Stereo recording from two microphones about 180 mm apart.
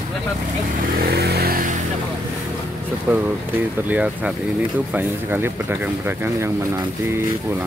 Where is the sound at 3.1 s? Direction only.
10° right (ahead or behind).